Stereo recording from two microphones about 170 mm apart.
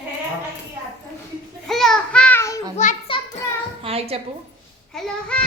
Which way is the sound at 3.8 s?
35° right (ahead or behind).